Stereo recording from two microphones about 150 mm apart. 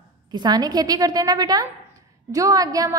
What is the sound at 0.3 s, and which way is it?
A woman's voice, 30° right (ahead or behind).